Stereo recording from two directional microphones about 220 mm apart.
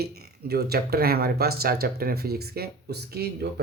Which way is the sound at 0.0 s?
45° right (ahead or behind).